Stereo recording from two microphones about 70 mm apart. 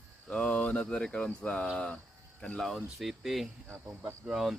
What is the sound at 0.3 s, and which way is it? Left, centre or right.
Speech, centre.